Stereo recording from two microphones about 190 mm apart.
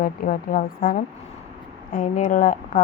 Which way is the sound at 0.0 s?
50° left (ahead or behind).